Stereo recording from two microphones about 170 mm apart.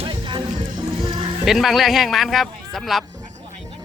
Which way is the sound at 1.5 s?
Centre (ahead or behind).